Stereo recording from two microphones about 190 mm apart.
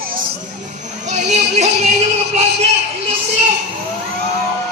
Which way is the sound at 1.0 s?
40° right (ahead or behind).